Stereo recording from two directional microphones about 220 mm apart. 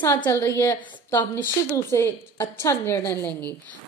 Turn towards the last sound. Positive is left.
turn(degrees=10)  # may be behind; listen again after turning